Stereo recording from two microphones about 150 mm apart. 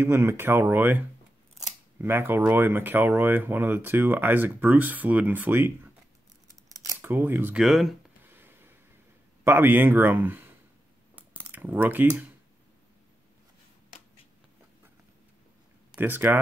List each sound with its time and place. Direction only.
0.0 s speech: 15° right (ahead or behind)
7.0 s speech: 15° right (ahead or behind)
8.2 s a sound: 15° right (ahead or behind)
9.4 s speech: 15° right (ahead or behind)
11.1 s a sound: 10° right (ahead or behind)
16.0 s speech: 15° right (ahead or behind)